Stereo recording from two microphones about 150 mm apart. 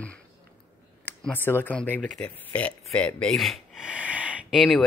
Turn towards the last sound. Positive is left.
turn(degrees=0)  # may be behind; listen again after turning